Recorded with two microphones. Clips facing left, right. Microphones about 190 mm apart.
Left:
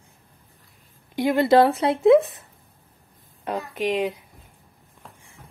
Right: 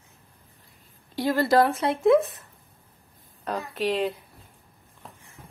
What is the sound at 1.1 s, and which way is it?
Speech, 20° left (ahead or behind).